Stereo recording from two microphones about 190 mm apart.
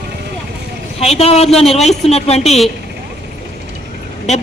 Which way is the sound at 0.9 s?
35° left (ahead or behind).